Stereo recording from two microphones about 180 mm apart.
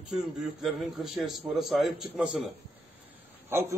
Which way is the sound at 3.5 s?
15° right (ahead or behind).